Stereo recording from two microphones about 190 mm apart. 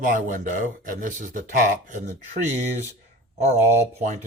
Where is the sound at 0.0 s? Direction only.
45° right (ahead or behind).